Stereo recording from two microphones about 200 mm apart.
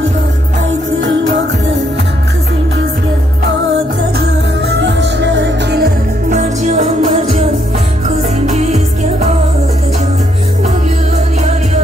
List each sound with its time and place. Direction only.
0.7 s music: 70° right (ahead or behind)
4.6 s music: 60° right (ahead or behind)
6.2 s music: 35° right (ahead or behind)